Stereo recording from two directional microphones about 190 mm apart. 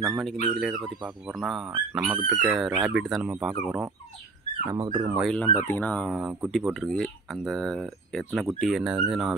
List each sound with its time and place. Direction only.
0.0 s speech: centre (ahead or behind)
4.7 s speech: 20° right (ahead or behind)
5.1 s speech: centre (ahead or behind)